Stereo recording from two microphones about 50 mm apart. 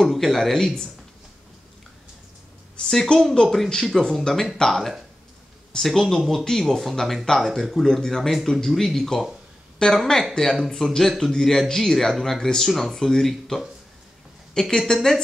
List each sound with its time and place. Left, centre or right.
0.0 s speech: centre
2.8 s speech: centre